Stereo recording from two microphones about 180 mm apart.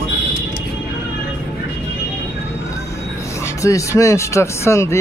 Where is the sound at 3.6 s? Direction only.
15° left (ahead or behind).